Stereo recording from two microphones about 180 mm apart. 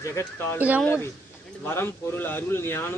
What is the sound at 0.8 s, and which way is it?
Speech, 10° left (ahead or behind).